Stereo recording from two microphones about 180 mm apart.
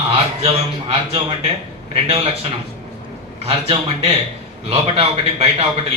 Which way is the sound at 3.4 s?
35° right (ahead or behind).